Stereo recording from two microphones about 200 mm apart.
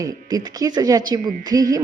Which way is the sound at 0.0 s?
20° right (ahead or behind).